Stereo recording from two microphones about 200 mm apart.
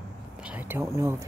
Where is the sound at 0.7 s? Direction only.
15° right (ahead or behind).